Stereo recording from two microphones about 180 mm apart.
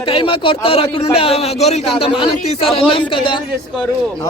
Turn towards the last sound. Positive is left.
turn(degrees=30)  # may be behind; listen again after turning